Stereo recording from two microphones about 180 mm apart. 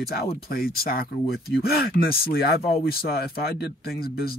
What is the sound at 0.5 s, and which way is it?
Speech, 55° left (ahead or behind).